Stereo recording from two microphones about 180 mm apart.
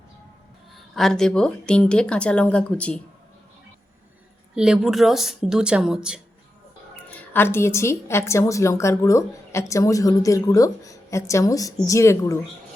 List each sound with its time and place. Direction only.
0.7 s speech: centre (ahead or behind)
4.5 s speech: 5° right (ahead or behind)
7.3 s a woman's voice: 15° left (ahead or behind)